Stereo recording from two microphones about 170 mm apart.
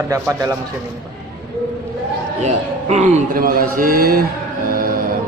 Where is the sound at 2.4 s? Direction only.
40° right (ahead or behind).